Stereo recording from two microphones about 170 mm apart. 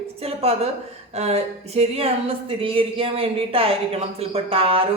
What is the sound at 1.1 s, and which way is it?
Speech, 40° right (ahead or behind).